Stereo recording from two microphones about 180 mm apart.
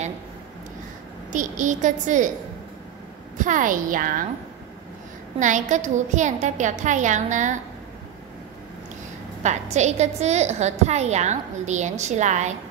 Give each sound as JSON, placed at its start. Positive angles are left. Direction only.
{"t": 1.3, "sound": "a child's voice", "side_deg": -45}
{"t": 3.3, "sound": "a child's voice", "side_deg": -45}
{"t": 5.4, "sound": "a child's voice", "side_deg": -45}
{"t": 9.4, "sound": "a woman's voice", "side_deg": -40}